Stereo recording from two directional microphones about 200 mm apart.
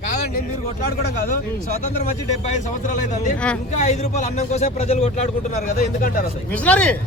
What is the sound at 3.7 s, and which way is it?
A man's voice, 35° left (ahead or behind).